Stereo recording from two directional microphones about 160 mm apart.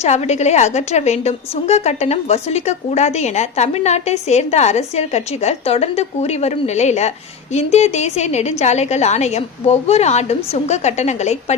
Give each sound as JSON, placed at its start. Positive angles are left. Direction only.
{"t": 0.0, "sound": "a woman's voice", "side_deg": 45}